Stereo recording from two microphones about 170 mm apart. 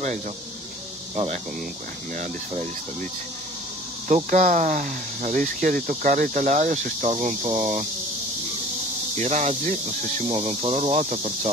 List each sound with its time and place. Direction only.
1.1 s speech: 40° right (ahead or behind)
4.1 s speech: 45° right (ahead or behind)
9.2 s speech: 40° right (ahead or behind)